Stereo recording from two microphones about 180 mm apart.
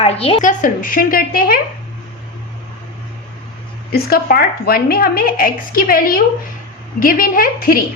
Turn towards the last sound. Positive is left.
turn(degrees=55)  # may be behind; listen again after turning